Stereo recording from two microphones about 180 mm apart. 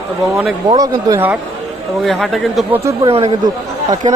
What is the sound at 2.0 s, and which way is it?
Speech, centre (ahead or behind).